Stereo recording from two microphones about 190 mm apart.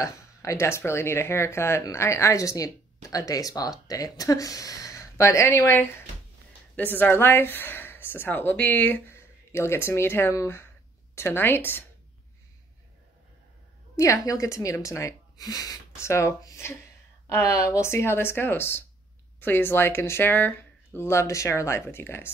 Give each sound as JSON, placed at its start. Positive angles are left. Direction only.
{"t": 0.0, "sound": "speech", "side_deg": 15}
{"t": 13.9, "sound": "speech", "side_deg": 15}